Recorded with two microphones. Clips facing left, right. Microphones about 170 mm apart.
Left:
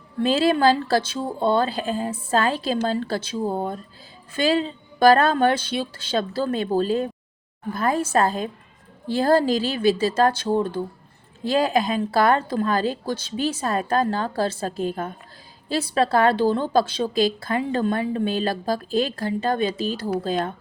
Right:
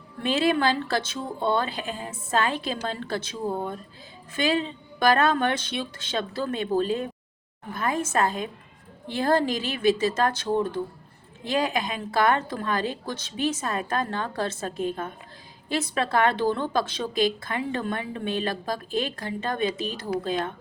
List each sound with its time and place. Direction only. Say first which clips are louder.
0.2 s a woman's voice: left 4 dB; 35° left (ahead or behind)